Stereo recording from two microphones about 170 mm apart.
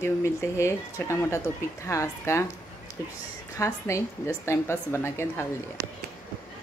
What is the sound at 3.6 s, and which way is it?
Speech, 15° left (ahead or behind).